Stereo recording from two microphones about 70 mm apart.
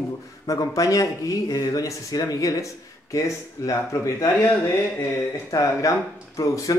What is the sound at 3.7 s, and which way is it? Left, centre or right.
Speech, left.